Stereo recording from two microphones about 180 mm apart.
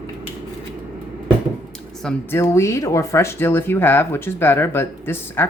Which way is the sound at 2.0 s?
15° left (ahead or behind).